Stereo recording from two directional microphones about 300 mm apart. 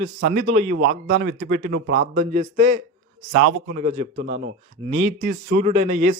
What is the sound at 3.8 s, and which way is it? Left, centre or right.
A man's voice, right.